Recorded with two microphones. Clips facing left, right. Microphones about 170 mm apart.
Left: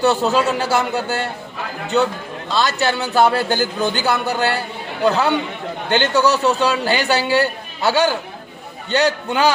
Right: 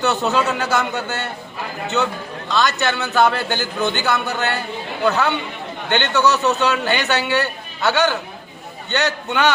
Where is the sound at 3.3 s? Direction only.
40° left (ahead or behind).